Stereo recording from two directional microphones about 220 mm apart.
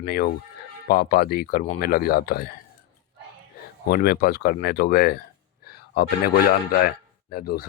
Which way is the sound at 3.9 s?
45° left (ahead or behind).